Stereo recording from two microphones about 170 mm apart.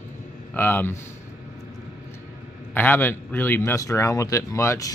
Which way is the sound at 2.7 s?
10° left (ahead or behind).